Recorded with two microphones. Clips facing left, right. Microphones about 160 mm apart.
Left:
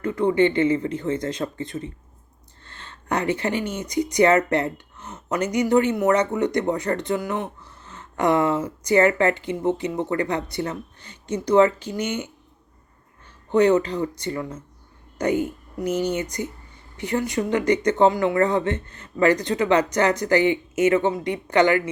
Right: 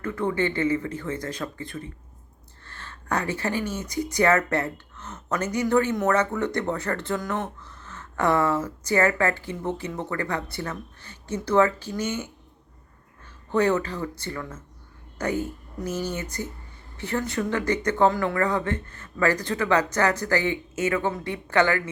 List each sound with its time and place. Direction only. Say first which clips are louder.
0.0 s speech: left 6 dB; 20° left (ahead or behind)
13.5 s speech: left 5 dB; 20° left (ahead or behind)